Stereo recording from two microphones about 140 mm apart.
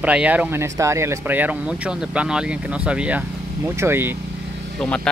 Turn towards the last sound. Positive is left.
turn(degrees=10)  # may be behind; listen again after turning